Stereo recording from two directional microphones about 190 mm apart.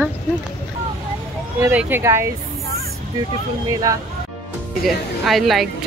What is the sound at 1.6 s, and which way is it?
Speech, 10° right (ahead or behind).